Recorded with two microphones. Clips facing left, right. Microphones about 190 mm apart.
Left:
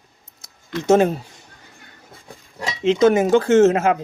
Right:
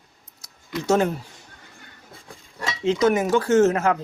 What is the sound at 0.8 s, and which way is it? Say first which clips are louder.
Speech: left 5 dB; 20° left (ahead or behind).